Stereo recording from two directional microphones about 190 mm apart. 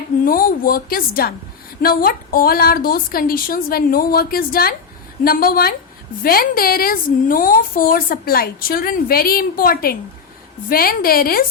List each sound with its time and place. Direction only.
0.3 s a woman's voice: 50° left (ahead or behind)